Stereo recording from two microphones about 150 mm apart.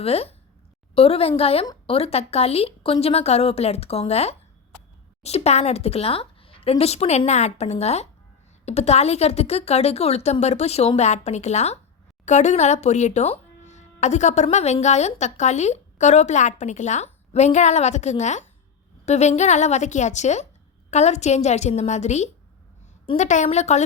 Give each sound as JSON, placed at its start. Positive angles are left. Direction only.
{"t": 0.0, "sound": "a woman's voice", "side_deg": 40}